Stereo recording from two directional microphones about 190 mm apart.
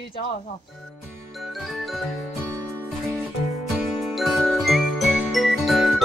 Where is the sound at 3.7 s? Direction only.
Centre (ahead or behind).